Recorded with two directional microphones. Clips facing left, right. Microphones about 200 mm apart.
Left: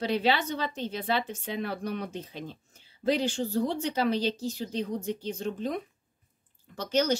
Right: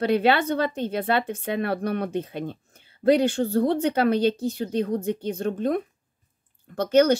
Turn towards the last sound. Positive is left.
turn(degrees=-60)  # may be behind; listen again after turning